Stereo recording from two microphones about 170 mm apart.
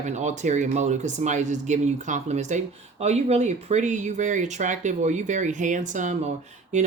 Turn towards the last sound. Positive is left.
turn(degrees=-45)  # may be behind; listen again after turning